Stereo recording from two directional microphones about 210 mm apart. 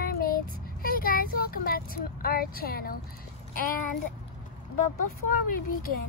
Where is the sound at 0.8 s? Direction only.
45° left (ahead or behind).